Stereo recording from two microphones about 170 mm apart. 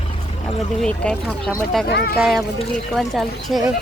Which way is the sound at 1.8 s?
75° left (ahead or behind).